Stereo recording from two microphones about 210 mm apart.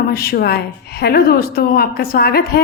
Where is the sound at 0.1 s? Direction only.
45° left (ahead or behind).